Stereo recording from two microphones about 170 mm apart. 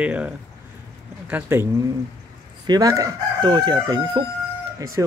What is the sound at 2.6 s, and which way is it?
Chicken, 20° right (ahead or behind).